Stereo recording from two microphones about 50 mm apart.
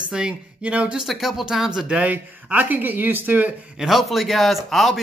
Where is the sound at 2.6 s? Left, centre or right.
Right.